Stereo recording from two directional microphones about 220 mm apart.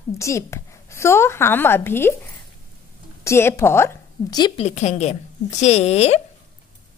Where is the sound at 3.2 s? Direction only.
10° left (ahead or behind); by 6.2 s 30° left (ahead or behind).